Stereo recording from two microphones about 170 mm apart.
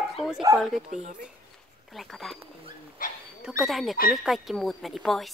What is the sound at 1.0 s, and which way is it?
Speech, 50° right (ahead or behind).